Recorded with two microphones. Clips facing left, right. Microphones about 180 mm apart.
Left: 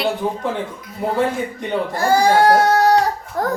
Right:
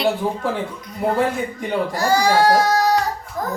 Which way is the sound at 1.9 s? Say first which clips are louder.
Left 3 dB; 55° left (ahead or behind).